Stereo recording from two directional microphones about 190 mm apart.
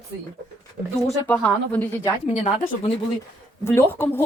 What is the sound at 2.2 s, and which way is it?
Speech, 35° left (ahead or behind).